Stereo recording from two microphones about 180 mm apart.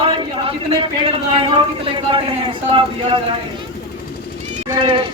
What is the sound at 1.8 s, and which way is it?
A man's voice, 30° right (ahead or behind).